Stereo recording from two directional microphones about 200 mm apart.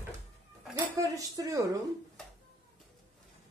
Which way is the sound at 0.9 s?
15° right (ahead or behind).